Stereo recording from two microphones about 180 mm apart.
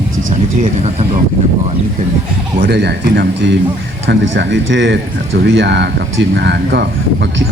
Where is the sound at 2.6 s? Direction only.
70° right (ahead or behind).